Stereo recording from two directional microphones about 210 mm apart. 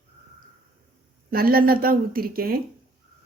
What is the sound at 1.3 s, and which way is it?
Speech, 45° right (ahead or behind).